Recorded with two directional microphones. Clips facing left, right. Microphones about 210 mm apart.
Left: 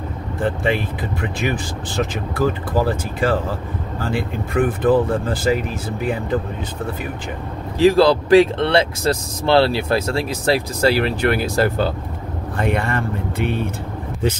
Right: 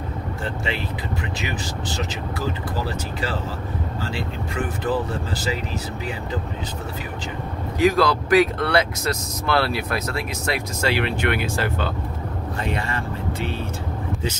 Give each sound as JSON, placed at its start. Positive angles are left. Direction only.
{"t": 1.4, "sound": "speech", "side_deg": 55}
{"t": 7.8, "sound": "speech", "side_deg": 30}
{"t": 12.5, "sound": "speech", "side_deg": 55}